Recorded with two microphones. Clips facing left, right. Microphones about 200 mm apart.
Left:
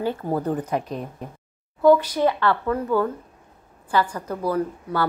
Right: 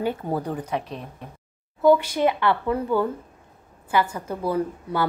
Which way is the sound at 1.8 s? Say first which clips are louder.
Left 1 dB; 20° right (ahead or behind).